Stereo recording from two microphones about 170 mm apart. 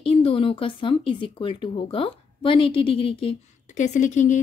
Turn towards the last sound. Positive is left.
turn(degrees=45)  # may be behind; listen again after turning